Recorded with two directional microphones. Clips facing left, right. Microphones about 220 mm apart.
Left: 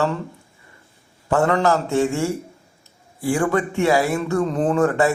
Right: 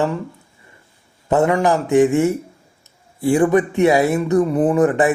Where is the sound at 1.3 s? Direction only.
15° right (ahead or behind).